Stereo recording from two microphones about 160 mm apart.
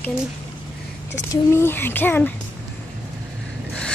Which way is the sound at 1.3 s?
15° left (ahead or behind).